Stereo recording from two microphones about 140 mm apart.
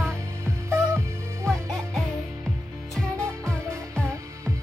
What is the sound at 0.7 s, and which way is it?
Music, 20° right (ahead or behind).